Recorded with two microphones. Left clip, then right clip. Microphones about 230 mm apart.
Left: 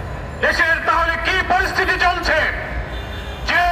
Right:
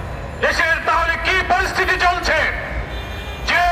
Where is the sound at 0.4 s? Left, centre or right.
Right.